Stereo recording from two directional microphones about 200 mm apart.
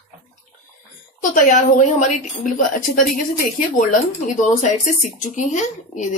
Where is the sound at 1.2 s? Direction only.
40° left (ahead or behind).